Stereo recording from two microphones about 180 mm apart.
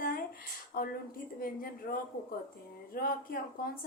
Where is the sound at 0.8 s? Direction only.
55° left (ahead or behind).